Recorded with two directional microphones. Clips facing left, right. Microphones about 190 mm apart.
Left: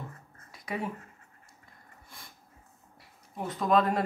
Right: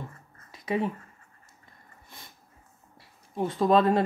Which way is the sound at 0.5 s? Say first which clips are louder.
Right 7 dB; 25° right (ahead or behind).